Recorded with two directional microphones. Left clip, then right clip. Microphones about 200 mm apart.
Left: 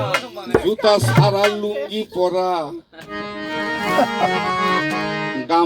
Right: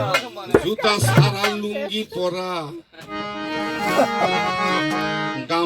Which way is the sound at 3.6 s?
5° left (ahead or behind).